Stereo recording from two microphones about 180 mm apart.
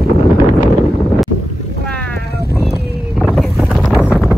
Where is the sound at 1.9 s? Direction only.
5° left (ahead or behind).